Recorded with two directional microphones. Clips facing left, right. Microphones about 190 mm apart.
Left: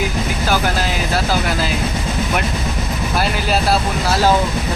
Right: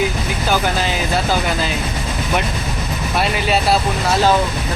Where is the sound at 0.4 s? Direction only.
Centre (ahead or behind).